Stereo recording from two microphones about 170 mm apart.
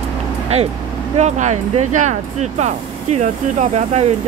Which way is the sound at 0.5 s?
40° right (ahead or behind).